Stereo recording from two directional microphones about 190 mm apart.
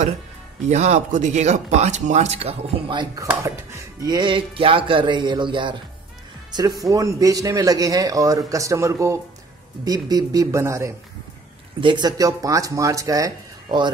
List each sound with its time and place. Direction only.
0.7 s speech: 40° right (ahead or behind)